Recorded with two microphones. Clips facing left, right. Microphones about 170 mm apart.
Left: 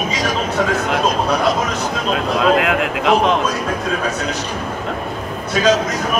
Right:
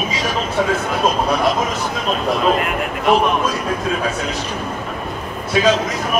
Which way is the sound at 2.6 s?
90° left.